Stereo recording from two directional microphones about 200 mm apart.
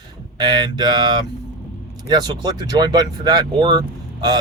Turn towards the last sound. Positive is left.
turn(degrees=-20)  # may be behind; listen again after turning